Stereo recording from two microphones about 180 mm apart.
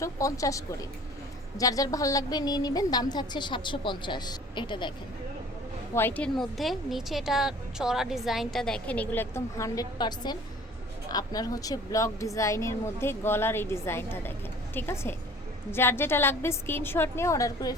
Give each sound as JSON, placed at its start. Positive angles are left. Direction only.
{"t": 0.0, "sound": "a woman's voice", "side_deg": 15}
{"t": 5.9, "sound": "a woman's voice", "side_deg": 10}